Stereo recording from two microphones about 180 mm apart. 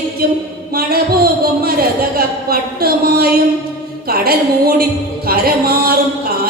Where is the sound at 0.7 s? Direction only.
60° right (ahead or behind).